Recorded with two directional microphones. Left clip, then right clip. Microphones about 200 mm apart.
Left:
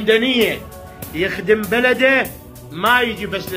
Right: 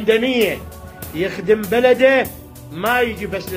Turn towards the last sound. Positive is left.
turn(degrees=20)  # may be behind; listen again after turning